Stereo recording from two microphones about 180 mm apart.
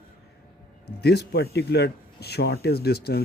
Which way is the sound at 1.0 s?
65° left (ahead or behind).